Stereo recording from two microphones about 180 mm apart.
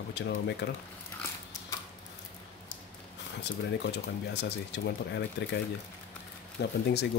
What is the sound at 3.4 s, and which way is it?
Speech, 70° left (ahead or behind).